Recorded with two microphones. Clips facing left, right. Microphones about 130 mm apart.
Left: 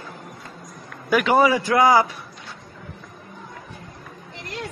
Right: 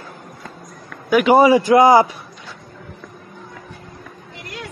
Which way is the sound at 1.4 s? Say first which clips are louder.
Right 6 dB; 20° right (ahead or behind).